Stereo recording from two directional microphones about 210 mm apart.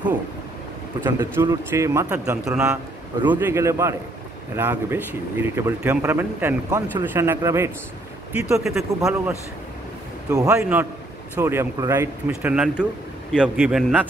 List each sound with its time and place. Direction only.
1.0 s speech: 10° right (ahead or behind)